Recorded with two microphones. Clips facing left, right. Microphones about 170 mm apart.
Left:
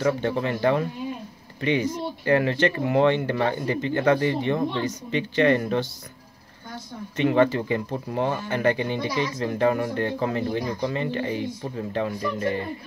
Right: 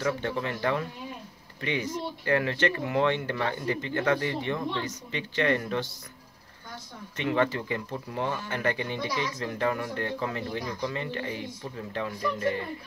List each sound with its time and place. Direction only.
0.0 s speech: 30° left (ahead or behind)
7.3 s speech: 25° left (ahead or behind)
8.1 s speech: 40° left (ahead or behind)
8.5 s speech: 25° left (ahead or behind)